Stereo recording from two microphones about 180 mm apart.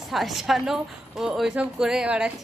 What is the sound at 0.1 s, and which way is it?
A woman's voice, centre (ahead or behind).